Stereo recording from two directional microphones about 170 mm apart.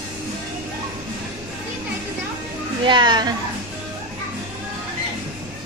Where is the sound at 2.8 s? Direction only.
25° right (ahead or behind).